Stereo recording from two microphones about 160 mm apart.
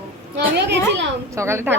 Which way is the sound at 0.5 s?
90° right.